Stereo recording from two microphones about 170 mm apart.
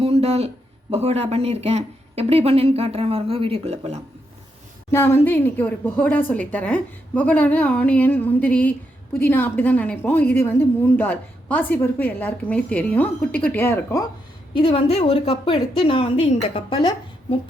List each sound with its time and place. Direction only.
0.0 s speech: 35° right (ahead or behind)
4.9 s a woman's voice: 15° left (ahead or behind)
14.5 s a woman's voice: 30° left (ahead or behind)